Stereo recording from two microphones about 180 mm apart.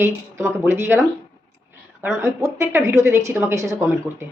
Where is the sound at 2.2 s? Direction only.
15° right (ahead or behind).